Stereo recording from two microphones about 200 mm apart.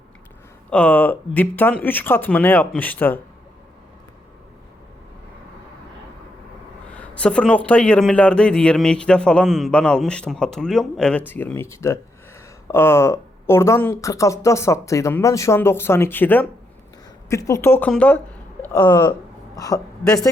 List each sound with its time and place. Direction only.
0.7 s speech: 5° left (ahead or behind)
6.8 s a man's voice: 5° left (ahead or behind)
18.6 s speech: 20° left (ahead or behind)